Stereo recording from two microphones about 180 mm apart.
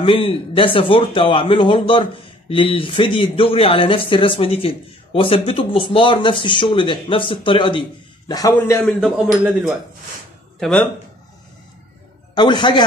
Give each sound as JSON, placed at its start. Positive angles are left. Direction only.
{"t": 0.0, "sound": "a man's voice", "side_deg": 30}
{"t": 8.8, "sound": "speech", "side_deg": 0}
{"t": 12.4, "sound": "speech", "side_deg": 25}